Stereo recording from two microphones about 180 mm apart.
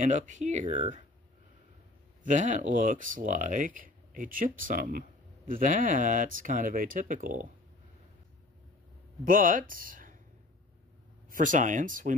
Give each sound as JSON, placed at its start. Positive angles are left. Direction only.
{"t": 0.0, "sound": "speech", "side_deg": -45}
{"t": 2.2, "sound": "speech", "side_deg": -45}
{"t": 9.2, "sound": "speech", "side_deg": -50}
{"t": 11.2, "sound": "speech", "side_deg": -45}